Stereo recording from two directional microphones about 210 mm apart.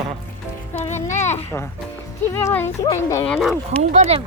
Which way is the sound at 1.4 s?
10° left (ahead or behind).